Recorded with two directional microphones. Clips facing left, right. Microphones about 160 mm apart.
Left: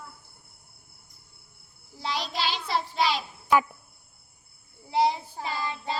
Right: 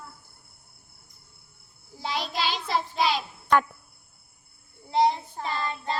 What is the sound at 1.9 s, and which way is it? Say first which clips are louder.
Child singing: right 1 dB; centre (ahead or behind).